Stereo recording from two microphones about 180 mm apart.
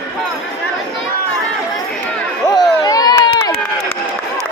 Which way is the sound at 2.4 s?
20° left (ahead or behind).